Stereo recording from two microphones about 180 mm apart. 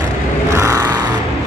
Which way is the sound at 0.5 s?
15° right (ahead or behind).